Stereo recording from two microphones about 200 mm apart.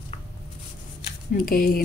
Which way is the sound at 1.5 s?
45° left (ahead or behind).